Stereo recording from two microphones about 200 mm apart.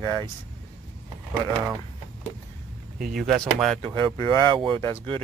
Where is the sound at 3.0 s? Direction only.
Centre (ahead or behind).